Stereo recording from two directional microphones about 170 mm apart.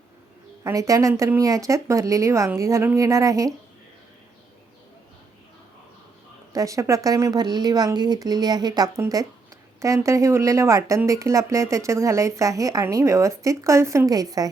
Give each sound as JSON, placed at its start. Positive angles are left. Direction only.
{"t": 0.6, "sound": "speech", "side_deg": -20}
{"t": 6.5, "sound": "speech", "side_deg": -20}